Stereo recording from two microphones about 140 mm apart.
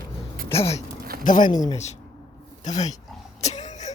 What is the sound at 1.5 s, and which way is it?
Speech, 55° left (ahead or behind).